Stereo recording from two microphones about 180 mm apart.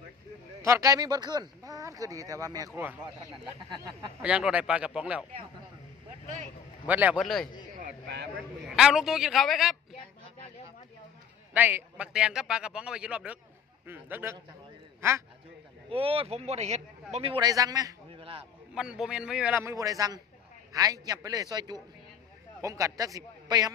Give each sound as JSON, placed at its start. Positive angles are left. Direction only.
{"t": 0.6, "sound": "speech", "side_deg": -15}
{"t": 4.2, "sound": "a man's voice", "side_deg": -5}
{"t": 6.9, "sound": "a man's voice", "side_deg": -10}
{"t": 8.6, "sound": "a man's voice", "side_deg": -5}
{"t": 11.5, "sound": "a man's voice", "side_deg": -10}
{"t": 15.9, "sound": "a man's voice", "side_deg": -30}
{"t": 18.4, "sound": "a man's voice", "side_deg": -5}